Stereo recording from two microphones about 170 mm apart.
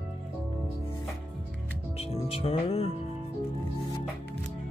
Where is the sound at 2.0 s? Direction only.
35° left (ahead or behind).